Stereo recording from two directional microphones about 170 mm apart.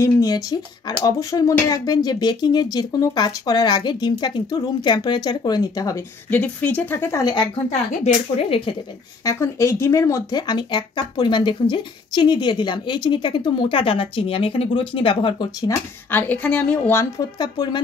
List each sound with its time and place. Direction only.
0.0 s speech: 20° left (ahead or behind)
8.0 s speech: 35° left (ahead or behind)
9.2 s speech: 15° left (ahead or behind)
15.7 s a woman's voice: 10° left (ahead or behind)